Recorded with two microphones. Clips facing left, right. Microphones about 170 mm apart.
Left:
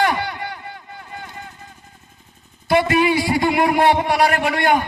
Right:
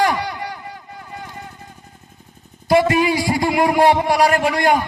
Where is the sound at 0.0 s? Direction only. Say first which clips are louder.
Right 1 dB; 35° right (ahead or behind).